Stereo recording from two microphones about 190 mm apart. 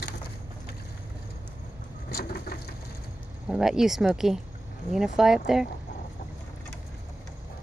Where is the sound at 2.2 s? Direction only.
55° left (ahead or behind).